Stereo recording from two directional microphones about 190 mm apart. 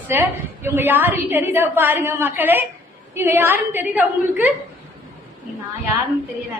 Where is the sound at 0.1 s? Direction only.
10° right (ahead or behind).